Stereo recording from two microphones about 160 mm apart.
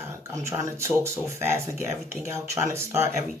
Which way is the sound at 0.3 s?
20° right (ahead or behind).